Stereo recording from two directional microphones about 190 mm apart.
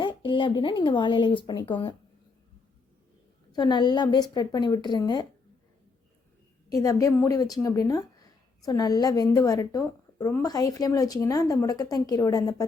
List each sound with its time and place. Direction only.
0.0 s speech: 25° left (ahead or behind)
3.5 s speech: 25° left (ahead or behind)
6.7 s speech: 20° left (ahead or behind)